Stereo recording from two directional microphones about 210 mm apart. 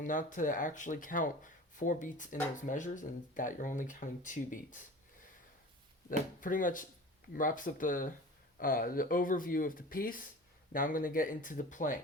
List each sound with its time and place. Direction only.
0.0 s speech: 40° left (ahead or behind)
6.1 s speech: 40° left (ahead or behind)